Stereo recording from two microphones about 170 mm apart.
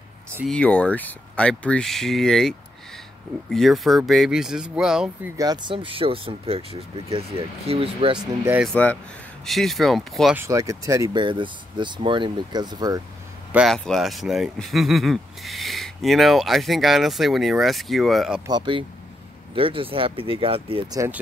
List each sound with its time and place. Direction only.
0.5 s speech: 5° left (ahead or behind)
5.4 s speech: 25° right (ahead or behind)
8.7 s speech: 10° left (ahead or behind)
10.3 s speech: 15° right (ahead or behind)
13.5 s speech: 5° right (ahead or behind)
18.5 s speech: 30° right (ahead or behind)